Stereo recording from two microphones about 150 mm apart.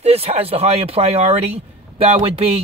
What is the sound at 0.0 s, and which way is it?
Speech, 40° right (ahead or behind).